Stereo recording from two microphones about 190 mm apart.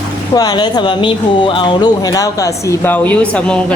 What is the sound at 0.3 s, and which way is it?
Speech, 20° left (ahead or behind).